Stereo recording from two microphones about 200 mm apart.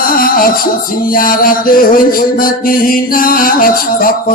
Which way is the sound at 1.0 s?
45° left (ahead or behind).